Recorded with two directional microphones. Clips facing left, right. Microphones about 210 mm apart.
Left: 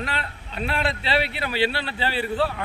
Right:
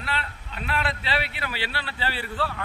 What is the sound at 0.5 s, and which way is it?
Speech, 25° left (ahead or behind).